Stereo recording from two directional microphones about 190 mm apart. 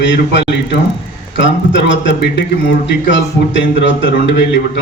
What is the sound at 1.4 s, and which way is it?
A man's voice, 70° left (ahead or behind).